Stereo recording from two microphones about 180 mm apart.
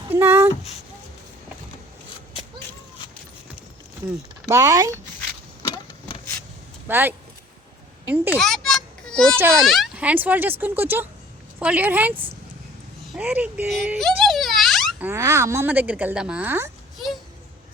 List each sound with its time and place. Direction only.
0.1 s a sound: 15° right (ahead or behind)
4.4 s speech: 20° right (ahead or behind)
5.6 s vehicle: 20° left (ahead or behind)
6.8 s speech: 10° right (ahead or behind)
8.4 s a sound: centre (ahead or behind)
9.6 s speech: centre (ahead or behind)
13.1 s speech: 10° right (ahead or behind)
14.2 s a sound: centre (ahead or behind)
15.0 s speech: 15° right (ahead or behind)